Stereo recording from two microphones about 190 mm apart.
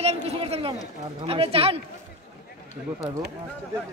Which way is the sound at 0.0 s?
30° right (ahead or behind).